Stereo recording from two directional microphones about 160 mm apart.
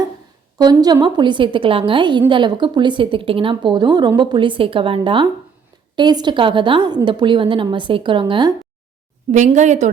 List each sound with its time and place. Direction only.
0.6 s a woman's voice: 25° right (ahead or behind)
9.3 s a woman's voice: 50° right (ahead or behind)